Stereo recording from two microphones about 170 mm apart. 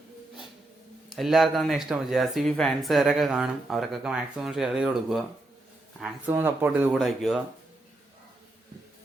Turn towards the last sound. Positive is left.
turn(degrees=0)  # may be behind; listen again after turning